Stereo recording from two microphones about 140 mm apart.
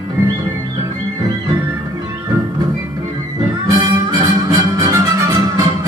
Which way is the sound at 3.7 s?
25° right (ahead or behind).